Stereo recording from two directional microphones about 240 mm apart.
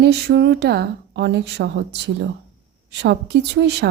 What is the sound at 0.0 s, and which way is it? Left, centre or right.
A woman's voice, right.